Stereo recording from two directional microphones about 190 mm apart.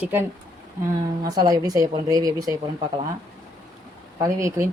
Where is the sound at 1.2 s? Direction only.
20° right (ahead or behind).